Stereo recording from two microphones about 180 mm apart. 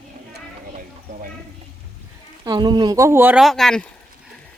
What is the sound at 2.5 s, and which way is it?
Speech, 25° right (ahead or behind).